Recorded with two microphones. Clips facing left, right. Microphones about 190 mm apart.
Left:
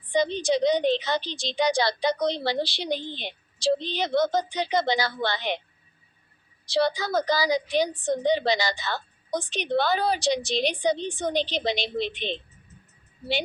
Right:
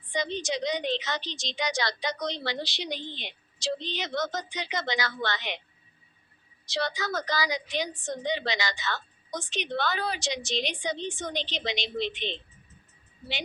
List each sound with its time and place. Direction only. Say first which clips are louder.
0.4 s a woman's voice: left 8 dB; 30° left (ahead or behind)
6.7 s a woman's voice: left 7 dB; 30° left (ahead or behind)